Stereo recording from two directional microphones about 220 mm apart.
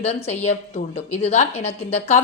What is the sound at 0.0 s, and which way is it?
A woman's voice, 30° left (ahead or behind).